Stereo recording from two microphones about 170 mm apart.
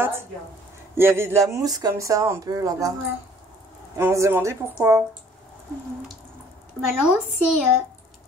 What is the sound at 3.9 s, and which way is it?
Speech, 15° right (ahead or behind).